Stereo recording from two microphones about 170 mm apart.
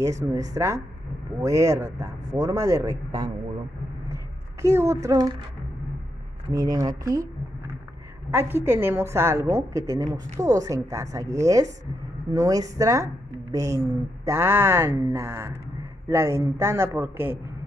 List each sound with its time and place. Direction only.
0.0 s a woman's voice: 20° right (ahead or behind)
4.6 s a woman's voice: 15° right (ahead or behind)
6.5 s a woman's voice: 20° right (ahead or behind)
8.3 s a woman's voice: 15° right (ahead or behind)